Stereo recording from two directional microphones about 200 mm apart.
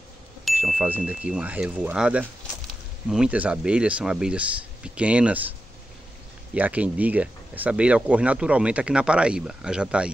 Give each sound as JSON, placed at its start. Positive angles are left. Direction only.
{"t": 0.5, "sound": "speech", "side_deg": -5}
{"t": 6.5, "sound": "speech", "side_deg": -5}